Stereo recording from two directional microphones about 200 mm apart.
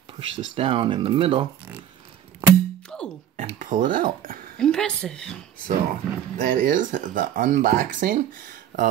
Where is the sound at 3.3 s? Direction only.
40° right (ahead or behind).